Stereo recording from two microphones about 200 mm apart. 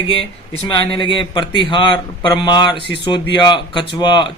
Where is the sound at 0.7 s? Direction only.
25° left (ahead or behind).